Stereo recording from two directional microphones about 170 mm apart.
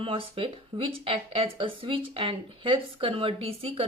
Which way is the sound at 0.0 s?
30° right (ahead or behind).